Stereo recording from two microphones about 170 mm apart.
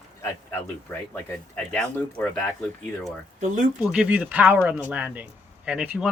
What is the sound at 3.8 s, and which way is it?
Speech, 5° right (ahead or behind).